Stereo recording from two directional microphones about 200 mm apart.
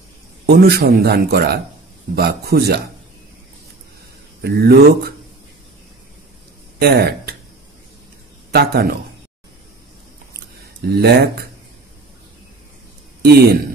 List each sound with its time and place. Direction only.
0.5 s speech: 50° right (ahead or behind)
4.4 s speech: 50° right (ahead or behind)
6.8 s speech: 50° right (ahead or behind)
8.5 s speech: 50° right (ahead or behind)
10.9 s speech: 55° right (ahead or behind)
13.2 s speech: 55° right (ahead or behind)